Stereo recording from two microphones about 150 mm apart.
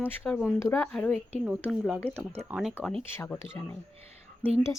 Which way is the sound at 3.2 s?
15° left (ahead or behind).